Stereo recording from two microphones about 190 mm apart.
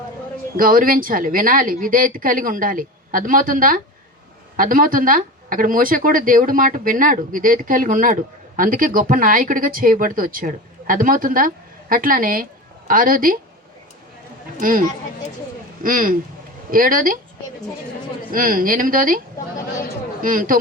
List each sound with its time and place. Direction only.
0.5 s speech: 45° right (ahead or behind)
14.6 s speech: 45° right (ahead or behind)
18.3 s speech: 45° right (ahead or behind)
20.2 s speech: 45° right (ahead or behind)